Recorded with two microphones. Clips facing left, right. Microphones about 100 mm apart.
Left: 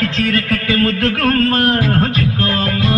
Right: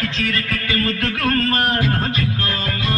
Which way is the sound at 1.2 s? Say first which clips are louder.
Left 4 dB; 50° left (ahead or behind).